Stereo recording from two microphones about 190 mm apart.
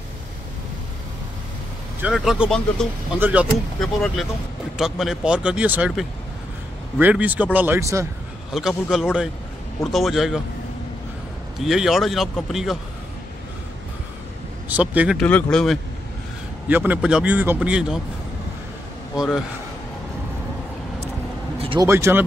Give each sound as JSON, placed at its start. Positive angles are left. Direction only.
{"t": 2.0, "sound": "a man's voice", "side_deg": -5}
{"t": 8.5, "sound": "speech", "side_deg": 0}
{"t": 11.6, "sound": "speech", "side_deg": 0}
{"t": 14.7, "sound": "a man's voice", "side_deg": -5}
{"t": 15.2, "sound": "speech", "side_deg": 5}
{"t": 16.6, "sound": "a man's voice", "side_deg": -10}
{"t": 19.1, "sound": "speech", "side_deg": 0}
{"t": 21.5, "sound": "vehicle", "side_deg": -30}
{"t": 21.8, "sound": "a man's voice", "side_deg": -15}